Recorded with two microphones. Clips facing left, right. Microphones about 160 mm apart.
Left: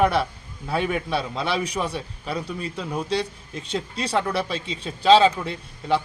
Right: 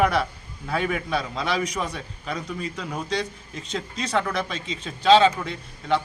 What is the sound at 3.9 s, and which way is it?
Speech, 30° left (ahead or behind).